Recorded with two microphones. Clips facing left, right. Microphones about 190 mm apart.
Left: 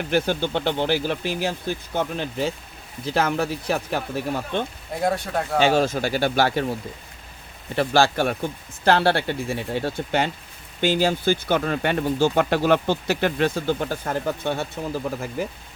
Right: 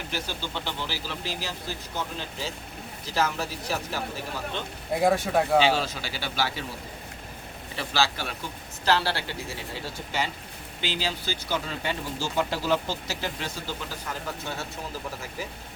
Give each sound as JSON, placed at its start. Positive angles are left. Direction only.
{"t": 0.1, "sound": "speech", "side_deg": 55}
{"t": 5.0, "sound": "speech", "side_deg": 0}
{"t": 5.5, "sound": "speech", "side_deg": 50}
{"t": 7.8, "sound": "speech", "side_deg": 55}